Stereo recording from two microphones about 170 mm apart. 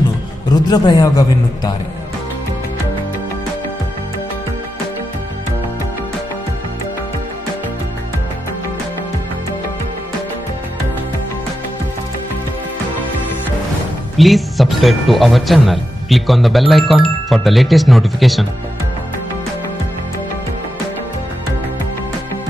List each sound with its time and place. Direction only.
0.7 s a man's voice: 20° left (ahead or behind)
14.1 s speech: centre (ahead or behind)